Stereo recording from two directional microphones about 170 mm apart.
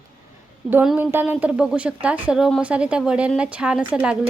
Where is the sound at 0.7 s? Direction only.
10° right (ahead or behind).